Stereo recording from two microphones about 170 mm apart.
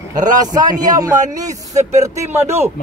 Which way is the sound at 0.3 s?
20° right (ahead or behind).